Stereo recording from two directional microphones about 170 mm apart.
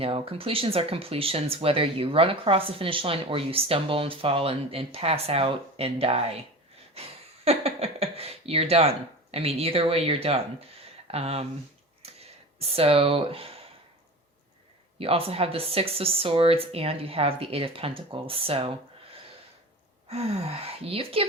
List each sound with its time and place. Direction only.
0.0 s speech: 35° right (ahead or behind)
12.0 s a sound: 35° right (ahead or behind)
14.9 s speech: 35° right (ahead or behind)
20.1 s speech: 35° right (ahead or behind)